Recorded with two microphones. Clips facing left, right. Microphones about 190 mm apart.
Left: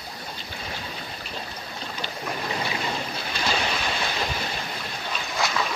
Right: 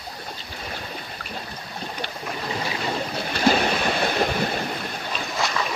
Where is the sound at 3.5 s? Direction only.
50° right (ahead or behind).